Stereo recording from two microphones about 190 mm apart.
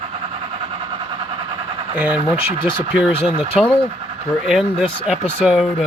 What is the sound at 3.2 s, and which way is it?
Speech, centre (ahead or behind).